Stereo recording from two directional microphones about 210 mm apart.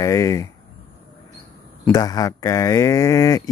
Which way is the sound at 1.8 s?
20° left (ahead or behind).